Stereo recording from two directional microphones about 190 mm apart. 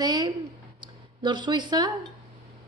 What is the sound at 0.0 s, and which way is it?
Speech, 20° right (ahead or behind).